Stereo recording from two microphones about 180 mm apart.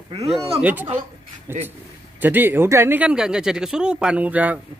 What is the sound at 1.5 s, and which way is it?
Speech, 15° right (ahead or behind).